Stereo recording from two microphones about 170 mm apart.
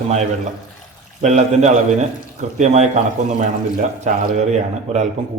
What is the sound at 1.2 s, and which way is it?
A man's voice, 45° right (ahead or behind).